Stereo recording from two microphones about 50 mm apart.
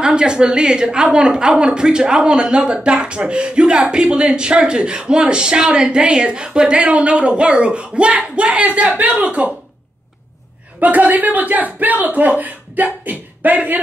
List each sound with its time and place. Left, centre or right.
0.0 s a woman's voice: centre
10.8 s speech: right